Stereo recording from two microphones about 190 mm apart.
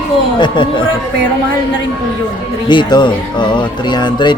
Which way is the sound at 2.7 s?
25° left (ahead or behind).